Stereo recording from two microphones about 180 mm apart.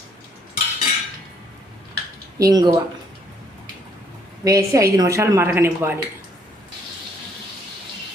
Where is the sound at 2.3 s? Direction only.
20° right (ahead or behind).